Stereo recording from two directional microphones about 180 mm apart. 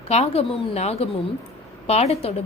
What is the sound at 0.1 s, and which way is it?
A woman's voice, 35° left (ahead or behind).